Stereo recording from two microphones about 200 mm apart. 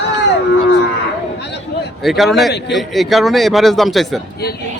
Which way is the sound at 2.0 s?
Centre (ahead or behind).